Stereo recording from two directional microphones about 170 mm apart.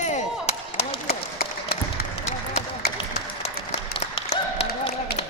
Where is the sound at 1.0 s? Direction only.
65° left (ahead or behind).